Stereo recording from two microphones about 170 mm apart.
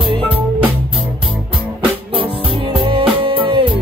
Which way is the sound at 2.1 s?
30° right (ahead or behind).